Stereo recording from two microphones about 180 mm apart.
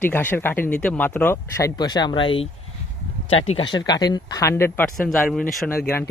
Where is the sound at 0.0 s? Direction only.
10° left (ahead or behind).